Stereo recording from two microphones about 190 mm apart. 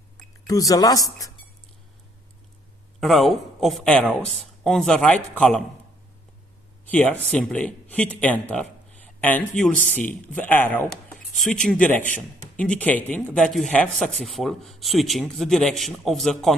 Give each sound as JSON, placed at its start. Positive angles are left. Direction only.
{"t": 0.5, "sound": "speech", "side_deg": 20}
{"t": 3.0, "sound": "speech", "side_deg": 0}
{"t": 6.9, "sound": "speech", "side_deg": 10}